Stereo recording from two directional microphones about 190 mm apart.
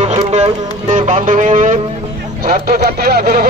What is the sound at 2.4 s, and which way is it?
Speech, 55° right (ahead or behind).